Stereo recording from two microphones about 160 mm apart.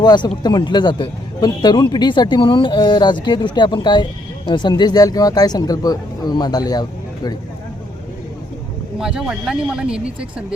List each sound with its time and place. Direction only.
0.0 s a man's voice: 30° left (ahead or behind)
9.0 s speech: 5° right (ahead or behind)